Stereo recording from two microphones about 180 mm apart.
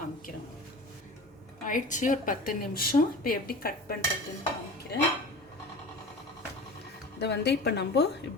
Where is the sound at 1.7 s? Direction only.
45° left (ahead or behind).